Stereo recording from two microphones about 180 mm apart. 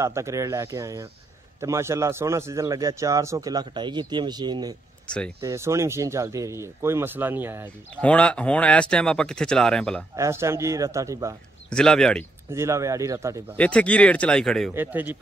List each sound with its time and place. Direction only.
0.0 s a man's voice: 15° right (ahead or behind)
5.1 s speech: 5° left (ahead or behind)
5.4 s a man's voice: 15° right (ahead or behind)
7.9 s speech: 5° left (ahead or behind)
10.1 s a man's voice: 15° right (ahead or behind)
11.7 s speech: 5° left (ahead or behind)
12.4 s a man's voice: 15° right (ahead or behind)
13.6 s speech: 5° left (ahead or behind)
14.7 s a man's voice: 10° right (ahead or behind)